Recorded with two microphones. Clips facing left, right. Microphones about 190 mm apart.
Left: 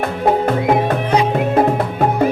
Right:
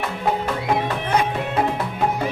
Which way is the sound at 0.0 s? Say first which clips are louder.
Left 7 dB; 50° left (ahead or behind).